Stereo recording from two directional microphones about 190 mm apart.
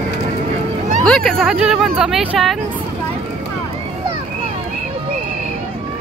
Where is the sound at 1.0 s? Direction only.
Centre (ahead or behind).